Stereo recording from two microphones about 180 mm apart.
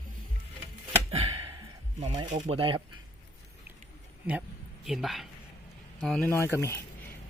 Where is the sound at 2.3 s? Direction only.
30° right (ahead or behind).